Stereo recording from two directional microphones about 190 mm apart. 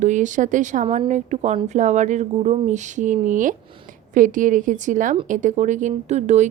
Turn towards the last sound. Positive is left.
turn(degrees=-35)  # may be behind; listen again after turning